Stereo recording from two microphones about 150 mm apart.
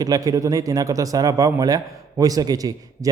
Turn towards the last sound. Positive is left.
turn(degrees=-25)  # may be behind; listen again after turning